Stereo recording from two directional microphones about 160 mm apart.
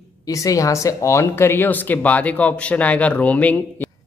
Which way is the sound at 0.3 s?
20° left (ahead or behind).